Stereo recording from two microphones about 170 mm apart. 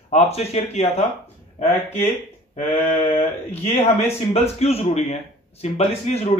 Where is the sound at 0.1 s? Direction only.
40° left (ahead or behind).